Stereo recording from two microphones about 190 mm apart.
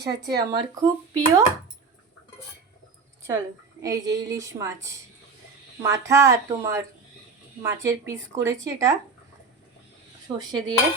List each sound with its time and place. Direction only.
0.0 s a woman's voice: 20° right (ahead or behind)
3.2 s a woman's voice: 15° right (ahead or behind)
10.3 s dishes: 20° right (ahead or behind)